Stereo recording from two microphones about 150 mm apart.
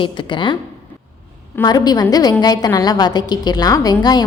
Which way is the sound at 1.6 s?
25° left (ahead or behind).